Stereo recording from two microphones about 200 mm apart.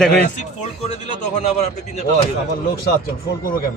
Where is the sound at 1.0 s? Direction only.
35° left (ahead or behind).